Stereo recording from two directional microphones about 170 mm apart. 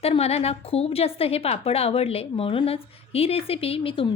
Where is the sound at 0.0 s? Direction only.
35° left (ahead or behind).